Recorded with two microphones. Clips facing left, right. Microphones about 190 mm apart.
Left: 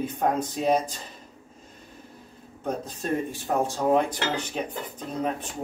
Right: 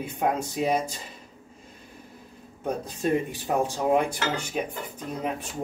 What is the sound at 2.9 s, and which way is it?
Speech, 15° right (ahead or behind).